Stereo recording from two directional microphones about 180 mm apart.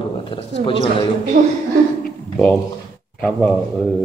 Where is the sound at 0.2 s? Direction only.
30° left (ahead or behind).